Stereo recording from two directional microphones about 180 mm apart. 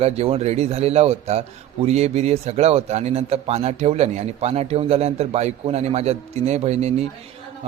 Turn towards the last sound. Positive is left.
turn(degrees=-35)  # may be behind; listen again after turning